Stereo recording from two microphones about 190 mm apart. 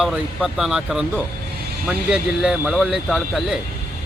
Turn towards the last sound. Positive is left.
turn(degrees=0)  # may be behind; listen again after turning